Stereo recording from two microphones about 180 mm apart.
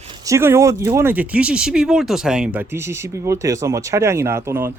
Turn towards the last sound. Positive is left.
turn(degrees=-15)  # may be behind; listen again after turning